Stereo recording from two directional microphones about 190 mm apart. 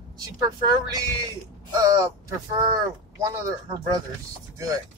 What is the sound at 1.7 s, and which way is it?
Speech, 20° right (ahead or behind).